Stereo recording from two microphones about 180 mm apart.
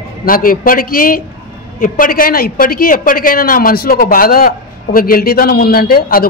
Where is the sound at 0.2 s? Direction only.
50° left (ahead or behind).